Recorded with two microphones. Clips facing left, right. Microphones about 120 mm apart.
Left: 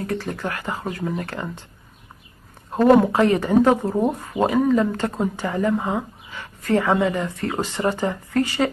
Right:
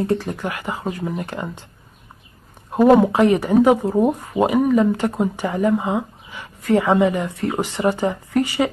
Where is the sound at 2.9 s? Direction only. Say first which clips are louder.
Right 2 dB; 15° right (ahead or behind).